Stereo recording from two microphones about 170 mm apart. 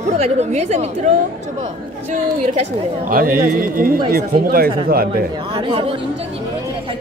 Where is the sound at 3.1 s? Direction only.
55° right (ahead or behind).